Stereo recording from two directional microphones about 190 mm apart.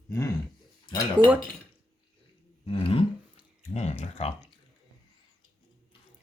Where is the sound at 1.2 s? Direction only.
25° right (ahead or behind).